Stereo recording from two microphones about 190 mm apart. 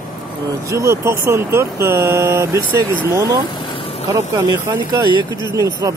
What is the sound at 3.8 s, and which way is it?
Vehicle, 30° left (ahead or behind).